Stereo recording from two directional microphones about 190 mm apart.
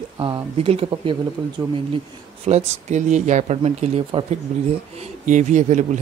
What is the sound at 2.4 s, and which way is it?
Speech, 35° right (ahead or behind).